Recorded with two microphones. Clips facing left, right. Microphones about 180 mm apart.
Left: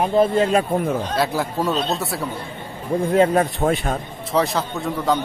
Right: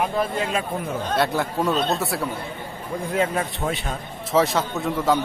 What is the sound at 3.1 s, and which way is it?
Speech, 40° left (ahead or behind).